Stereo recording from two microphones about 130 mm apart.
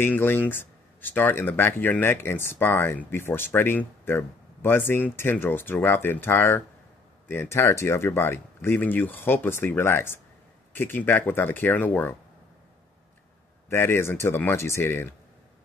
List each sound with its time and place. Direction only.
0.0 s speech: 15° left (ahead or behind)
13.7 s speech: 20° left (ahead or behind)